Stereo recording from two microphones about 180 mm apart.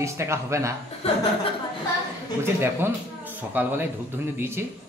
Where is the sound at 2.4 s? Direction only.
10° right (ahead or behind).